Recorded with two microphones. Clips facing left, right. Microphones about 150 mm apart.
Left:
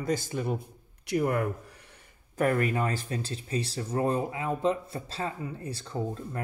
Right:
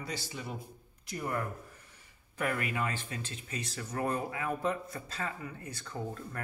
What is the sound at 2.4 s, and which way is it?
Speech, 40° left (ahead or behind).